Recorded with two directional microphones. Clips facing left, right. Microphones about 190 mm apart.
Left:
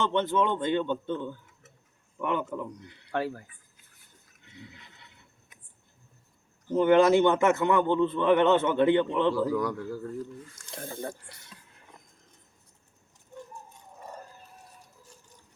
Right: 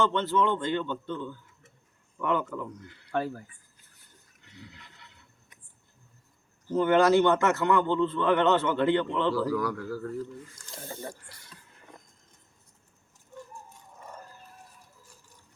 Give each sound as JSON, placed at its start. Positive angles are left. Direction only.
{"t": 0.0, "sound": "a man's voice", "side_deg": 20}
{"t": 4.4, "sound": "neigh", "side_deg": 20}
{"t": 6.7, "sound": "a man's voice", "side_deg": 20}
{"t": 10.7, "sound": "speech", "side_deg": 55}